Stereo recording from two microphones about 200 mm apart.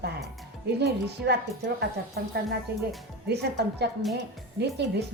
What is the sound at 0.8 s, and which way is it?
Speech, 55° right (ahead or behind).